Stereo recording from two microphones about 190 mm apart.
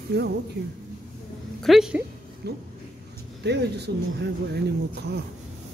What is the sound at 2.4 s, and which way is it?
Speech, 60° right (ahead or behind).